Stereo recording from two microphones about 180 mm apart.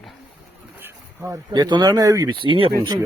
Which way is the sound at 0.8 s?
10° right (ahead or behind).